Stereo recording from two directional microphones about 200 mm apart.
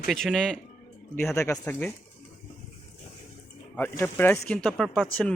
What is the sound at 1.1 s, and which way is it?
Speech, 10° left (ahead or behind).